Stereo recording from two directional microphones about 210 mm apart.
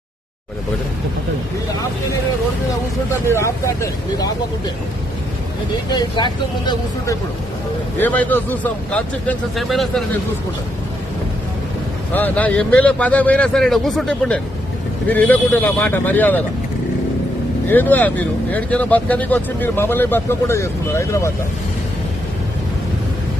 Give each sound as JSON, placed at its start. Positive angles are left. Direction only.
{"t": 3.2, "sound": "speech", "side_deg": 15}
{"t": 5.9, "sound": "speech", "side_deg": 20}
{"t": 7.9, "sound": "speech", "side_deg": 10}
{"t": 12.1, "sound": "speech", "side_deg": 10}
{"t": 17.7, "sound": "speech", "side_deg": 10}